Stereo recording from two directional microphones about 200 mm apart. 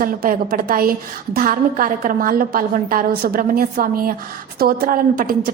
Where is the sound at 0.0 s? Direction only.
45° right (ahead or behind).